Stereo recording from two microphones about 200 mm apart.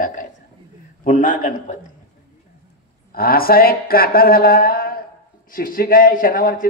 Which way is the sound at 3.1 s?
50° left (ahead or behind).